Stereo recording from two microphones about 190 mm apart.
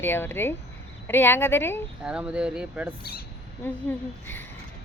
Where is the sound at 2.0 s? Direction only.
5° right (ahead or behind).